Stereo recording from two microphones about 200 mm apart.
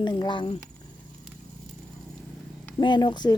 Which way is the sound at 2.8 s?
20° left (ahead or behind).